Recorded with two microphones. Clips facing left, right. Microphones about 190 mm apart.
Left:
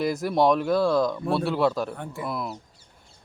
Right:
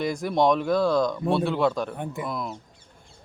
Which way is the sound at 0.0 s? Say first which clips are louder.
Left 1 dB; 5° left (ahead or behind).